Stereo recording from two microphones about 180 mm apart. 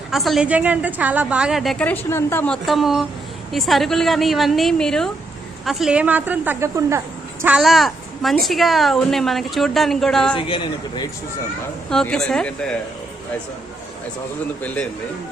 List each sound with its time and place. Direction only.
0.1 s a woman's voice: centre (ahead or behind)
7.4 s a woman's voice: 5° right (ahead or behind)
10.3 s a man's voice: 25° left (ahead or behind)
11.9 s a woman's voice: 5° left (ahead or behind)